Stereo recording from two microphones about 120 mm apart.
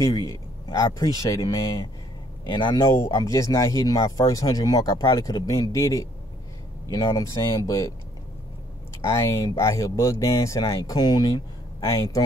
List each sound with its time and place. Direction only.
0.0 s speech: 35° left (ahead or behind)
9.0 s speech: 25° left (ahead or behind)